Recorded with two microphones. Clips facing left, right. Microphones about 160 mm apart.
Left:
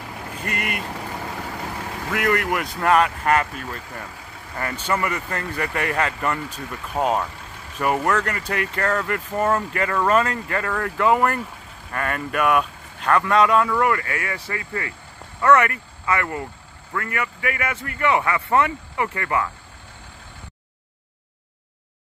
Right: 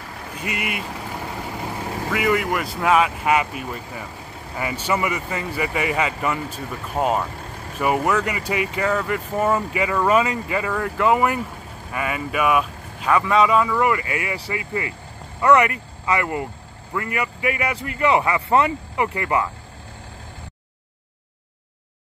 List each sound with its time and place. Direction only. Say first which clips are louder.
0.4 s vehicle: right 1 dB; 5° right (ahead or behind)
2.1 s speech: right 1 dB; centre (ahead or behind)
14.0 s a man's voice: right 2 dB; 15° right (ahead or behind)